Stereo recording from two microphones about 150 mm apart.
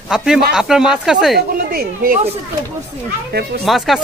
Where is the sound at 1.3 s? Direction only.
75° right (ahead or behind).